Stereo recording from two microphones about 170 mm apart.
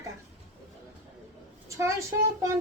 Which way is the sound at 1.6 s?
15° right (ahead or behind).